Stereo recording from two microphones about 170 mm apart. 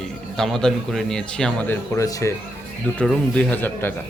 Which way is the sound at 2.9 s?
5° left (ahead or behind).